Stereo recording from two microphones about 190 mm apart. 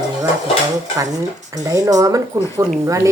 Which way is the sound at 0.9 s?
20° right (ahead or behind).